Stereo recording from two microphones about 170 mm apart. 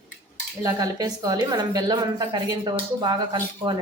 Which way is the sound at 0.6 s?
20° right (ahead or behind).